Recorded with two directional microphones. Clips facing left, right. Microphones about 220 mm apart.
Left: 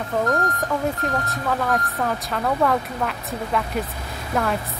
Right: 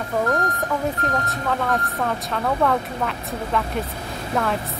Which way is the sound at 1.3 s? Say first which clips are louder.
Even; 5° left (ahead or behind).